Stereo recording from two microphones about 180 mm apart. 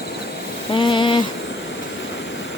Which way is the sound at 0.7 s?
25° left (ahead or behind).